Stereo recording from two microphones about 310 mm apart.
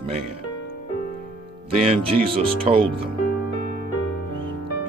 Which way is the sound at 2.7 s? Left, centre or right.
Centre.